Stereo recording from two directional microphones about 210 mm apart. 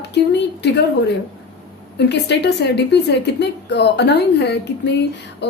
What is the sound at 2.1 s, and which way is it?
A woman's voice, 55° left (ahead or behind).